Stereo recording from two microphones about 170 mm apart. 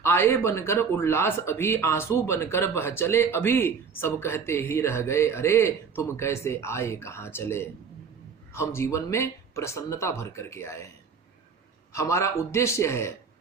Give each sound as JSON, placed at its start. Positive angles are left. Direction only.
{"t": 0.0, "sound": "speech", "side_deg": 15}
{"t": 11.9, "sound": "speech", "side_deg": 15}